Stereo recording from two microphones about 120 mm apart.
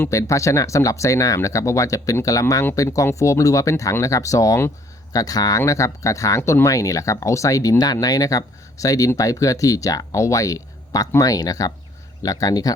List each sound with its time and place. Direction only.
0.0 s speech: 25° left (ahead or behind)